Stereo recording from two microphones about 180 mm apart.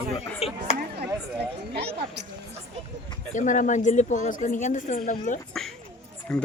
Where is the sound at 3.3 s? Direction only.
45° left (ahead or behind).